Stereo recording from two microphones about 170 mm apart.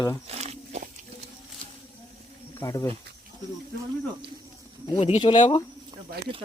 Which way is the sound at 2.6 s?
20° left (ahead or behind).